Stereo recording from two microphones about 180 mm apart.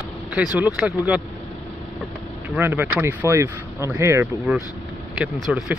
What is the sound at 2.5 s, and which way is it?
Speech, 10° right (ahead or behind).